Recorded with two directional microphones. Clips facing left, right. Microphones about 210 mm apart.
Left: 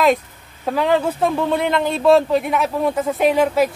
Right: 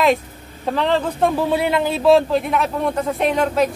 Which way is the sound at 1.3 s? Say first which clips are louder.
Even; 5° right (ahead or behind).